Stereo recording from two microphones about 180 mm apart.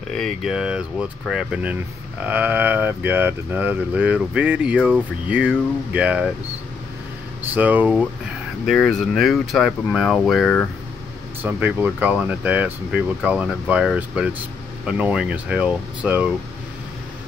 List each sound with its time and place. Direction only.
0.1 s speech: centre (ahead or behind)
7.5 s speech: 10° right (ahead or behind)
8.6 s speech: centre (ahead or behind)
11.4 s speech: 10° right (ahead or behind)